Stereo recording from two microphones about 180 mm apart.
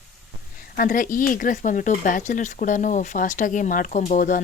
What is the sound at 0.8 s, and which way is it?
Speech, 50° left (ahead or behind).